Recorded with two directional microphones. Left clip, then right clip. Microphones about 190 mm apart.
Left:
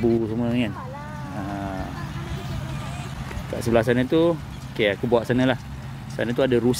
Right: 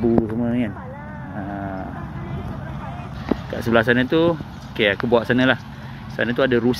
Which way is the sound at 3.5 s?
15° left (ahead or behind).